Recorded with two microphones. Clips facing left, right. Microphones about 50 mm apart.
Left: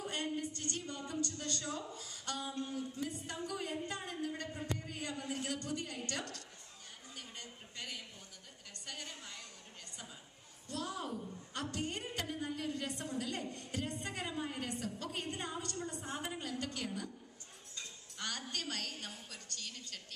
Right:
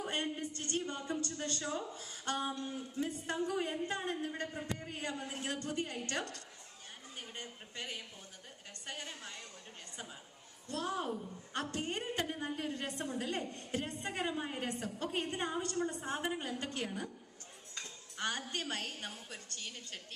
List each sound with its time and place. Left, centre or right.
0.0 s a sound: right
0.6 s a woman's voice: right
10.7 s a woman's voice: right
18.1 s a woman's voice: right